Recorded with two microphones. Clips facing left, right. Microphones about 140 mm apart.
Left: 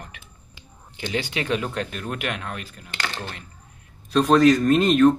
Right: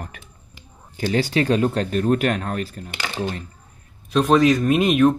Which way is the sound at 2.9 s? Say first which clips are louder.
Right 5 dB; 15° right (ahead or behind).